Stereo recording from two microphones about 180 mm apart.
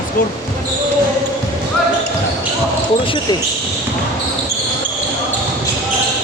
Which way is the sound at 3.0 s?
30° left (ahead or behind).